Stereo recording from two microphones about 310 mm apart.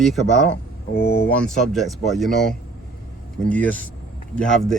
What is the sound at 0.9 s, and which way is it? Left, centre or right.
Speech, left.